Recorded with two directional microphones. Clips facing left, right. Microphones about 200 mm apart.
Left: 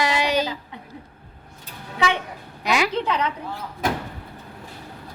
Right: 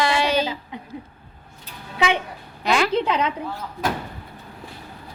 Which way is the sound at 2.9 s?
10° right (ahead or behind).